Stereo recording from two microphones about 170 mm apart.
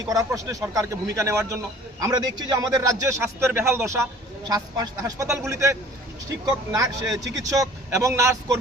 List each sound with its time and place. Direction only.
0.0 s a man's voice: 20° right (ahead or behind)